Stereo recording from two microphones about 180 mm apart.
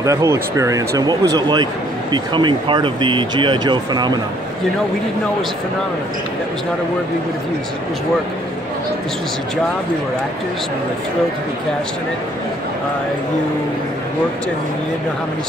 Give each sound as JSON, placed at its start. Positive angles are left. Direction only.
{"t": 0.0, "sound": "speech", "side_deg": -15}